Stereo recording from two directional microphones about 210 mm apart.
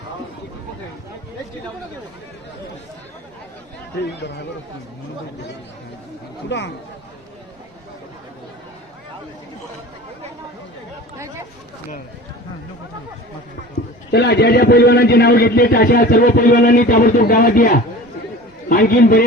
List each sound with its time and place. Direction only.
14.1 s a man's voice: 50° left (ahead or behind)